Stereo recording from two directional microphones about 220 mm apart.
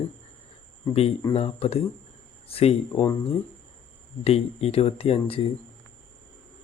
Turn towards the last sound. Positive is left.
turn(degrees=25)  # may be behind; listen again after turning